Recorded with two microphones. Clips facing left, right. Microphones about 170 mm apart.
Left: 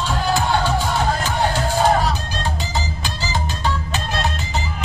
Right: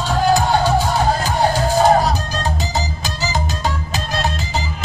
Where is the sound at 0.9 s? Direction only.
40° right (ahead or behind).